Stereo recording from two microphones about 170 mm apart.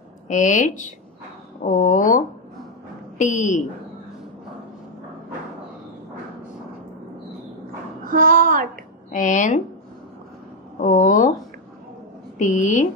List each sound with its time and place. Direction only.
0.3 s a woman's voice: 45° left (ahead or behind)
8.0 s a sound: 55° right (ahead or behind)
9.1 s a woman's voice: 45° left (ahead or behind)
10.8 s speech: 45° left (ahead or behind)
12.4 s a woman's voice: 45° left (ahead or behind)